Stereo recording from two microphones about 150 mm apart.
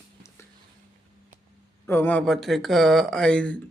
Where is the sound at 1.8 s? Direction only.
15° left (ahead or behind).